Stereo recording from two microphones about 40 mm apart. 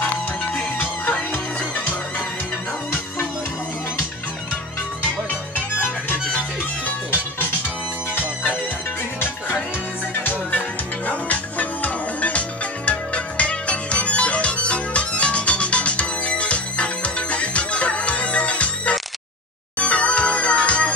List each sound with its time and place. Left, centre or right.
11.1 s music: left